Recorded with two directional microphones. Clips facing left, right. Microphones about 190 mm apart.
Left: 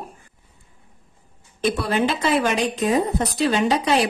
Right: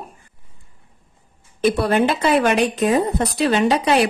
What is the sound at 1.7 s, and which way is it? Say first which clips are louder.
A woman's voice: right 4 dB; 55° right (ahead or behind).